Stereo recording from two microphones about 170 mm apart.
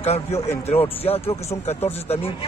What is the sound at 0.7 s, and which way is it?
Speech, 35° left (ahead or behind).